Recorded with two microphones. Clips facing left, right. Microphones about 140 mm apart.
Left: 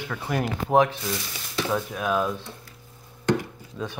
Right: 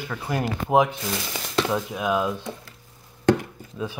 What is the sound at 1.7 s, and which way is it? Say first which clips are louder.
Speech: right 1 dB; 15° right (ahead or behind).